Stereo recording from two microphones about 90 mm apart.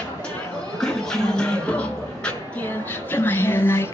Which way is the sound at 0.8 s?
10° left (ahead or behind).